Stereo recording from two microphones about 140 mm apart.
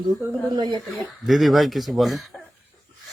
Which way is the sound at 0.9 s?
Centre (ahead or behind).